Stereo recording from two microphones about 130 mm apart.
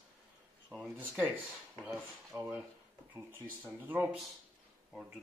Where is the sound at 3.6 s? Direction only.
10° right (ahead or behind).